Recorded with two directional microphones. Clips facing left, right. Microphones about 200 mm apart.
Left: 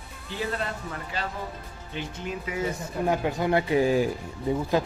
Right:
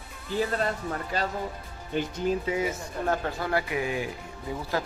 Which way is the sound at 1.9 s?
40° right (ahead or behind).